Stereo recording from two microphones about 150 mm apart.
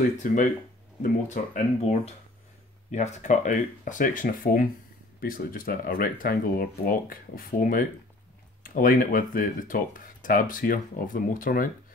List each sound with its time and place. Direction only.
0.2 s speech: 65° left (ahead or behind)